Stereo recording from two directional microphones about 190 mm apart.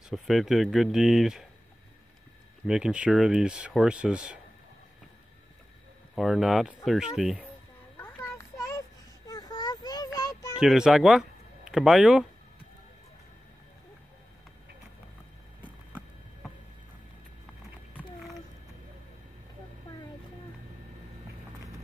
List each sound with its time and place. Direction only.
0.1 s speech: centre (ahead or behind)
2.6 s speech: 5° right (ahead or behind)
6.1 s speech: centre (ahead or behind)
8.0 s child singing: 15° left (ahead or behind)
9.3 s a sound: 20° left (ahead or behind)
10.1 s child singing: 20° left (ahead or behind)
10.6 s speech: 5° right (ahead or behind)
17.9 s a sound: centre (ahead or behind)